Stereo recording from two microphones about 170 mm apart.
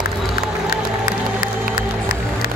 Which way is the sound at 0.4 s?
60° left (ahead or behind).